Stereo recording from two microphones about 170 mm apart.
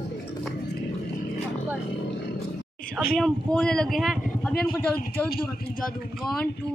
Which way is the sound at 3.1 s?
5° left (ahead or behind).